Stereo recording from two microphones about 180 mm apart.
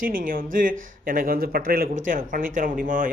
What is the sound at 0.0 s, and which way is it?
Speech, 50° right (ahead or behind).